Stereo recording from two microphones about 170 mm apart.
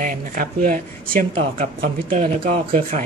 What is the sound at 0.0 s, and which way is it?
Speech, 50° right (ahead or behind).